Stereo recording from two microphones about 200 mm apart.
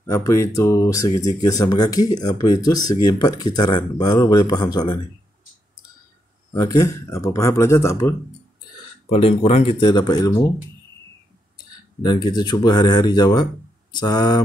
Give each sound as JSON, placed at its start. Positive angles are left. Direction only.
{"t": 0.0, "sound": "speech", "side_deg": 15}
{"t": 6.5, "sound": "speech", "side_deg": 20}
{"t": 9.1, "sound": "speech", "side_deg": 30}
{"t": 11.5, "sound": "speech", "side_deg": 20}